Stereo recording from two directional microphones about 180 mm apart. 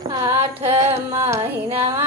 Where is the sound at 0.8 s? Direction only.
15° right (ahead or behind).